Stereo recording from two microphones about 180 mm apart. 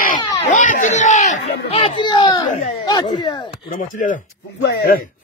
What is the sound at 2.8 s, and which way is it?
Speech, 25° left (ahead or behind).